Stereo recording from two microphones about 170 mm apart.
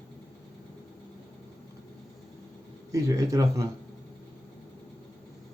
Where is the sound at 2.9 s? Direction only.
20° right (ahead or behind).